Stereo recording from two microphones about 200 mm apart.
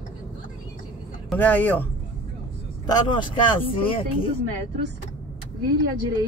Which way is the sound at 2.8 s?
20° left (ahead or behind).